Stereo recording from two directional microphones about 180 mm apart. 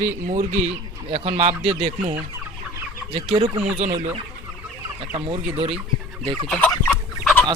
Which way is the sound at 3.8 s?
40° right (ahead or behind).